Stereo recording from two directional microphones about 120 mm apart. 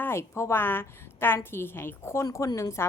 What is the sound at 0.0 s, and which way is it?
A woman's voice, 20° left (ahead or behind).